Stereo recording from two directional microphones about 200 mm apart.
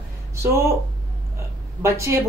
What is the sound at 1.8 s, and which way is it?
Speech, 15° right (ahead or behind).